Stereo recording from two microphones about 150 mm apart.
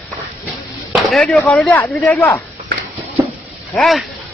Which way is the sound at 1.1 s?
Centre (ahead or behind).